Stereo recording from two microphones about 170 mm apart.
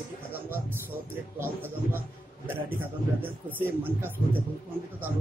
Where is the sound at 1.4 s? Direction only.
15° right (ahead or behind).